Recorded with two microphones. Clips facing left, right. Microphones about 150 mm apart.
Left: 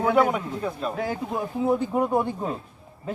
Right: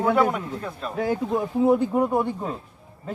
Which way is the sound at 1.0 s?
20° right (ahead or behind).